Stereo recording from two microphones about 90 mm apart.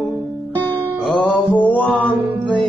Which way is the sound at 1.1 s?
5° left (ahead or behind).